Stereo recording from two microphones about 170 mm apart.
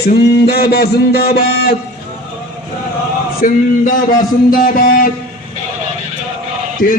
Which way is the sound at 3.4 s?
55° left (ahead or behind).